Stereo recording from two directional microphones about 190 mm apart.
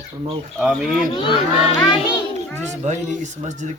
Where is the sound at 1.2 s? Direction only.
25° left (ahead or behind).